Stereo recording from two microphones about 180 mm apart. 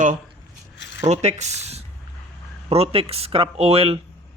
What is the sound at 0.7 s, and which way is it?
Zipper, 75° left (ahead or behind).